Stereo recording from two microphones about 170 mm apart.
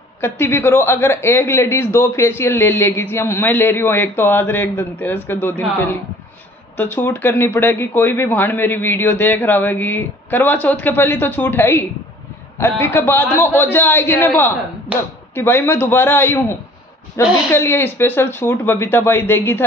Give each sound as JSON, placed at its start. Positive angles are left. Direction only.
{"t": 0.2, "sound": "a man's voice", "side_deg": 15}
{"t": 14.9, "sound": "speech", "side_deg": -10}
{"t": 15.3, "sound": "a man's voice", "side_deg": 15}